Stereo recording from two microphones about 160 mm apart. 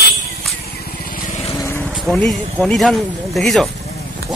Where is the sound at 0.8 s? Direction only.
60° left (ahead or behind).